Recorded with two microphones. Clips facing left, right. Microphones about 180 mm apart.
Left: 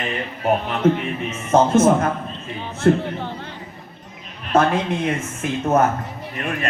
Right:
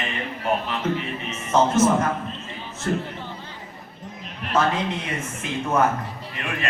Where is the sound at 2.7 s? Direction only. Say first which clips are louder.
Left 9 dB; 60° left (ahead or behind).